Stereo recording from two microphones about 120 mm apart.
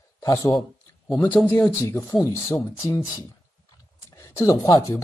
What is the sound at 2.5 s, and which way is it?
Speech, 25° left (ahead or behind).